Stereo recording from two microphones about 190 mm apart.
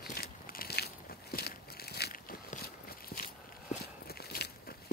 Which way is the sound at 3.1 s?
50° left (ahead or behind).